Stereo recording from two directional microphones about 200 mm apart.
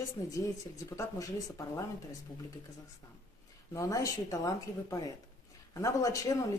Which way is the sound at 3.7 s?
15° left (ahead or behind).